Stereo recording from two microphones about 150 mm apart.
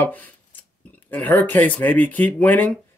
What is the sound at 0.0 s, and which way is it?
Speech, 10° left (ahead or behind).